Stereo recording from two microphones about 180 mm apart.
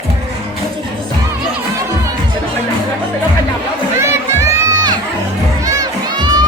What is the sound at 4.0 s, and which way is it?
Crowd, 15° right (ahead or behind).